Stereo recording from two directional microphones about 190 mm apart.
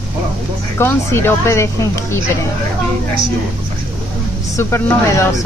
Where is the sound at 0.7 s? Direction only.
10° left (ahead or behind).